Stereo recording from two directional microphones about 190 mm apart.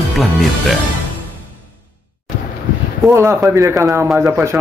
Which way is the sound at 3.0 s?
15° right (ahead or behind).